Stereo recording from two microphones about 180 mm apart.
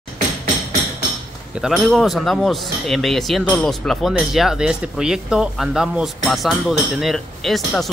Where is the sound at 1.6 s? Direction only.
Centre (ahead or behind).